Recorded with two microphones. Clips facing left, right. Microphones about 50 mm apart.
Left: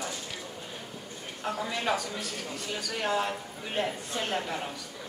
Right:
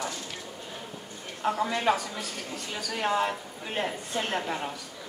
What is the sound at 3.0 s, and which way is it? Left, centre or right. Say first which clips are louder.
A woman's voice: right 3 dB; centre.